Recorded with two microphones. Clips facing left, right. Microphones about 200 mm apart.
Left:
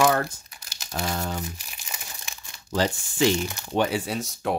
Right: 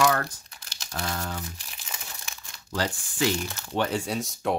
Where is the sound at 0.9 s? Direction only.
20° left (ahead or behind).